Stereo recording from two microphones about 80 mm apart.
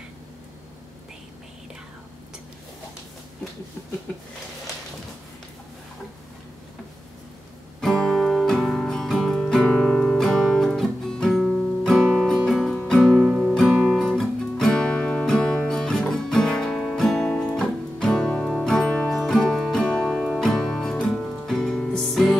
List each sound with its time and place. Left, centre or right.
7.8 s music: centre
13.9 s music: centre
20.1 s music: centre